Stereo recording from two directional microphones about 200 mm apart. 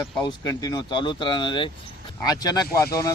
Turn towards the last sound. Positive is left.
turn(degrees=15)  # may be behind; listen again after turning